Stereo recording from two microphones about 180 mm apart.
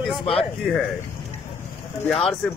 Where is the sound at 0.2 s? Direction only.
30° left (ahead or behind).